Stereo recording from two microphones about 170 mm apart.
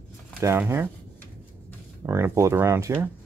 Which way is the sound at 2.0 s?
15° right (ahead or behind).